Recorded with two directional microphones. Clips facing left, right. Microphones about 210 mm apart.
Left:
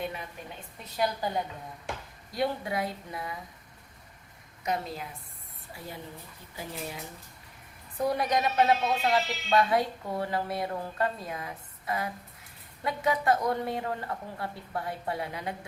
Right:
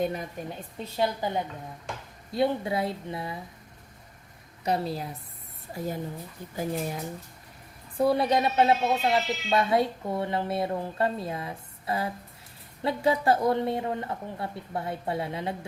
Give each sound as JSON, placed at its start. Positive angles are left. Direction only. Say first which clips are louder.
{"t": 0.0, "sound": "speech", "louder": "right 7 dB", "side_deg": -40}
{"t": 4.6, "sound": "a woman's voice", "louder": "right 4 dB", "side_deg": -35}
{"t": 7.9, "sound": "speech", "louder": "right 4 dB", "side_deg": -30}